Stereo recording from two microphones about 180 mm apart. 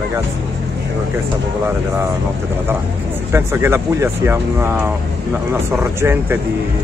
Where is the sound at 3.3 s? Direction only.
15° right (ahead or behind).